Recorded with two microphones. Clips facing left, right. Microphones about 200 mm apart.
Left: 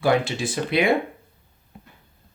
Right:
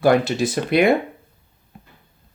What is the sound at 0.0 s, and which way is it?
Speech, 40° right (ahead or behind).